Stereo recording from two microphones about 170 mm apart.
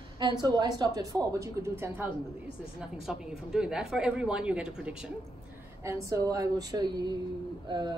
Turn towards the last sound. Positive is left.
turn(degrees=-25)  # may be behind; listen again after turning